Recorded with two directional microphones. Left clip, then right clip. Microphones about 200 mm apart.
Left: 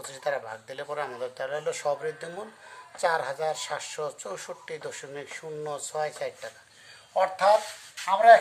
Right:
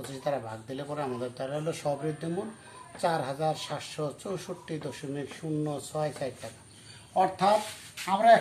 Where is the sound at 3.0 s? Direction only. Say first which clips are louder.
Left 2 dB; 50° left (ahead or behind).